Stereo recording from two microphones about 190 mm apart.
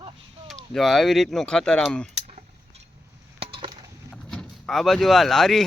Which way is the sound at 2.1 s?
35° right (ahead or behind).